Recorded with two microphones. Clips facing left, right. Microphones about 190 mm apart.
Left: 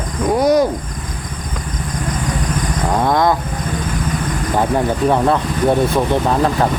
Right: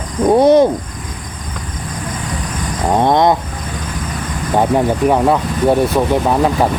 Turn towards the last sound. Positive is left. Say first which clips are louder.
# right 2 dB
turn(degrees=-15)  # may be behind; listen again after turning